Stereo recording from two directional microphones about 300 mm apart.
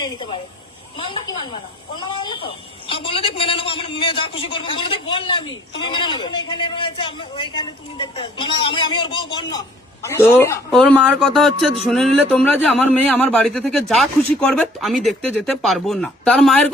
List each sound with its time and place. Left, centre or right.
1.0 s a woman's voice: centre